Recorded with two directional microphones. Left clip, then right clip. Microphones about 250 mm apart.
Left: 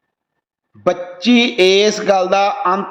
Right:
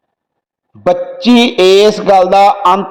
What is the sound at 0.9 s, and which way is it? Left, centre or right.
A man's voice, centre.